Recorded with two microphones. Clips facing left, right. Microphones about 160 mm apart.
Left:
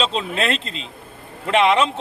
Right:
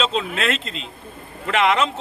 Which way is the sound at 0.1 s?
35° left (ahead or behind).